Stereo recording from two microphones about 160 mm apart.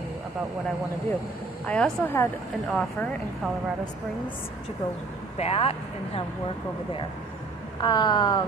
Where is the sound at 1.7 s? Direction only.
10° left (ahead or behind).